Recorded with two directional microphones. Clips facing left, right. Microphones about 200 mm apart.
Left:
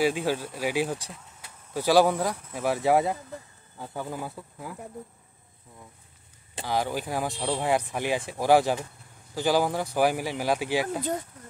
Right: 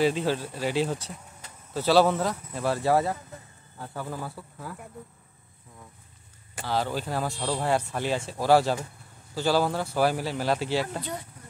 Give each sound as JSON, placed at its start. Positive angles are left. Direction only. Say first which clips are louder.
{"t": 0.0, "sound": "speech", "louder": "right 1 dB", "side_deg": 10}
{"t": 6.6, "sound": "speech", "louder": "even", "side_deg": 15}